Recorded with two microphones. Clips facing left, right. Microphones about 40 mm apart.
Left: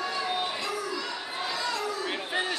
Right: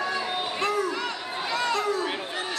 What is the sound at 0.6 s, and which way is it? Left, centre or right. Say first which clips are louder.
Crowd: right 6 dB; right.